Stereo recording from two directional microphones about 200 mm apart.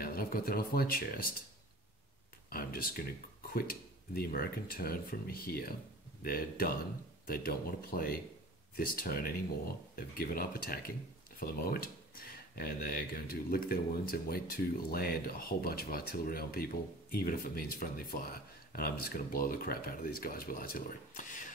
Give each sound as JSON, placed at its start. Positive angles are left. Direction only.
{"t": 0.0, "sound": "speech", "side_deg": 45}
{"t": 2.5, "sound": "a sound", "side_deg": 50}
{"t": 4.1, "sound": "speech", "side_deg": 50}